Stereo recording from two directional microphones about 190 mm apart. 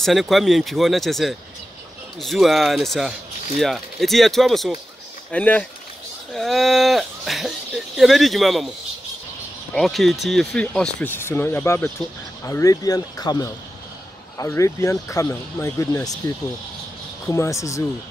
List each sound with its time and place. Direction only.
0.0 s speech: centre (ahead or behind)
9.8 s speech: centre (ahead or behind); by 16.2 s 20° left (ahead or behind)
17.3 s speech: 15° left (ahead or behind)